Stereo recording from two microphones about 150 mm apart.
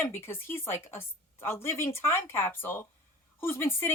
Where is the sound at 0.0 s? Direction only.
15° left (ahead or behind).